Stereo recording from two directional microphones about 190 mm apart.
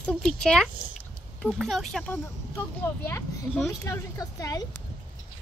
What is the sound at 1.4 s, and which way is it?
Speech, centre (ahead or behind).